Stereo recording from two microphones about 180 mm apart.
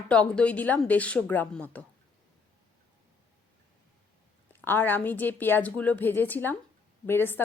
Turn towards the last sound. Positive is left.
turn(degrees=10)  # may be behind; listen again after turning